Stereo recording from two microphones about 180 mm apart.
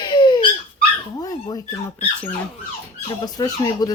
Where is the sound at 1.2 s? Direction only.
20° left (ahead or behind).